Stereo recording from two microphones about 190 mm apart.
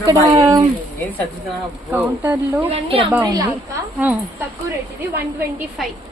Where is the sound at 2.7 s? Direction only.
30° right (ahead or behind).